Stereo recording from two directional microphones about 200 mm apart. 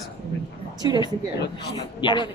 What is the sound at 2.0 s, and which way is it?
Speech, 25° left (ahead or behind).